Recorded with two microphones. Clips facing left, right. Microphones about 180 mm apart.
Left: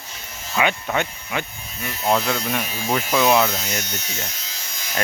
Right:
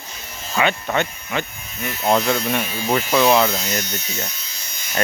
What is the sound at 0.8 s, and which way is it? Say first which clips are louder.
Speech: right 2 dB; 5° left (ahead or behind).